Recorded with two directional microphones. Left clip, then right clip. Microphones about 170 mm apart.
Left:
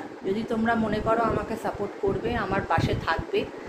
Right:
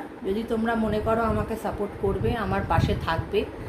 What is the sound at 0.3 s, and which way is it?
A woman's voice, centre (ahead or behind).